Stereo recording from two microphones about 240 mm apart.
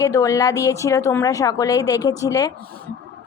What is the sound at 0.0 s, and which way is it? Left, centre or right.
A woman's voice, centre.